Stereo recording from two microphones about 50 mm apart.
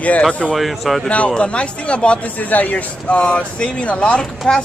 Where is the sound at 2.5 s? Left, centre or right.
Left.